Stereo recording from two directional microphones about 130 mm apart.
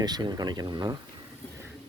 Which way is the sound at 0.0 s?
30° right (ahead or behind).